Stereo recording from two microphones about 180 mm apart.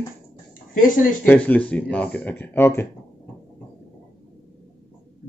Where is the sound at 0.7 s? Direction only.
45° left (ahead or behind).